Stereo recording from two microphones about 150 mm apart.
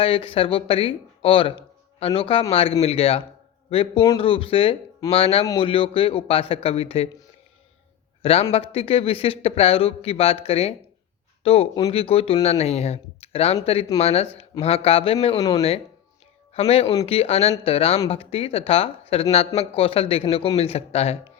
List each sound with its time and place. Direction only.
0.0 s a man's voice: 35° left (ahead or behind)
8.2 s a man's voice: 40° left (ahead or behind)
15.4 s speech: 25° left (ahead or behind)
16.6 s a man's voice: 45° left (ahead or behind)